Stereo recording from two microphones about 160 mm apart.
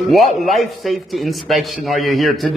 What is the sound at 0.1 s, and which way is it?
A man's voice, centre (ahead or behind).